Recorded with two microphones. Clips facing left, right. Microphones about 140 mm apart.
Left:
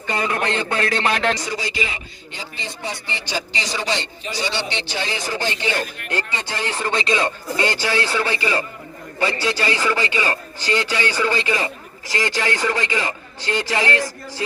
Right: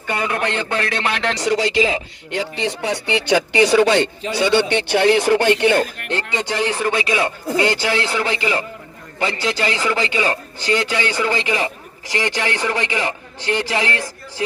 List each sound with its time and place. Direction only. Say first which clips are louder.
0.5 s a man's voice: even; 15° left (ahead or behind)
1.4 s speech: right 9 dB; 70° right (ahead or behind)
6.3 s speech: right 5 dB; 15° right (ahead or behind)